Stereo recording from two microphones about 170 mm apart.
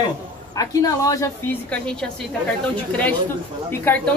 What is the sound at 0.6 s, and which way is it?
A woman's voice, 20° left (ahead or behind).